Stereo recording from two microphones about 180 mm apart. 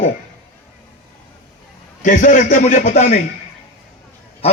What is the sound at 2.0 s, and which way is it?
A man's voice, 45° left (ahead or behind).